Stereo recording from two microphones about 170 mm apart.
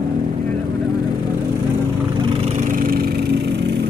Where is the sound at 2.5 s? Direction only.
50° right (ahead or behind); by 3.8 s 80° right.